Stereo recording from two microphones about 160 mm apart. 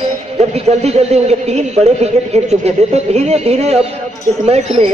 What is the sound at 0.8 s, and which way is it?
A man's voice, 40° right (ahead or behind).